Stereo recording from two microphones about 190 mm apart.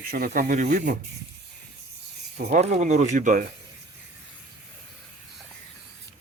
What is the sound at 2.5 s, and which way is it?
Speech, 35° right (ahead or behind).